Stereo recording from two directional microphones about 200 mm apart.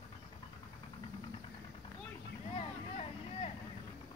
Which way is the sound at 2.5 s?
30° left (ahead or behind).